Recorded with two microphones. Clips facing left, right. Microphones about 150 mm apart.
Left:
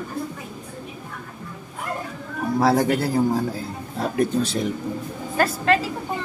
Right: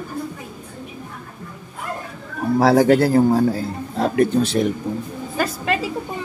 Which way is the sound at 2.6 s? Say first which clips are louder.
Right 6 dB; 75° right (ahead or behind).